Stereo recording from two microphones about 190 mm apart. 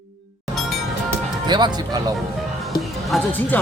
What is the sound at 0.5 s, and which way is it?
Music, centre (ahead or behind).